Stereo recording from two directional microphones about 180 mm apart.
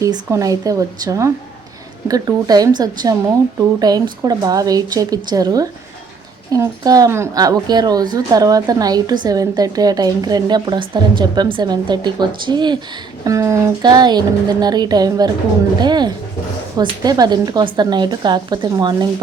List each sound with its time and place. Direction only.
0.0 s a woman's voice: 20° right (ahead or behind)